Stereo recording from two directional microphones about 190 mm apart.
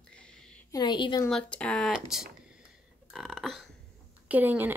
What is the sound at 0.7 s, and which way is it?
Speech, 25° left (ahead or behind).